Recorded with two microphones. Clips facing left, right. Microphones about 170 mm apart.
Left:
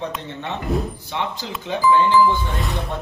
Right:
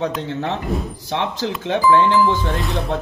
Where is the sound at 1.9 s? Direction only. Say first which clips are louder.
Right 2 dB; 75° right (ahead or behind).